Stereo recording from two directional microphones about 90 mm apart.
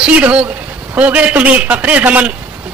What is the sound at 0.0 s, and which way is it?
A man's voice, 15° right (ahead or behind).